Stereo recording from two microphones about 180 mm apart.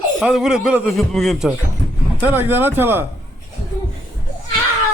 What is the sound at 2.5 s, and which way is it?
Speech, 10° right (ahead or behind).